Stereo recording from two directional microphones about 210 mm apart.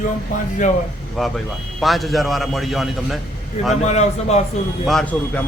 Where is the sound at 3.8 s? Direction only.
30° left (ahead or behind).